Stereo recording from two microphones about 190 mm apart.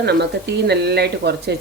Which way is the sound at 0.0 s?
60° right (ahead or behind).